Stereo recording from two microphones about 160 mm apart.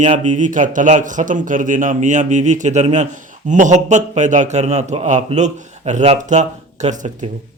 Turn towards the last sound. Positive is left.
turn(degrees=-45)  # may be behind; listen again after turning